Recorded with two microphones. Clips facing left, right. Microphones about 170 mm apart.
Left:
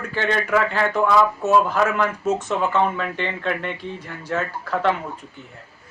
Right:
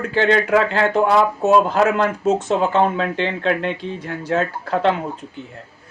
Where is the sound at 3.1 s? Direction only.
90° right.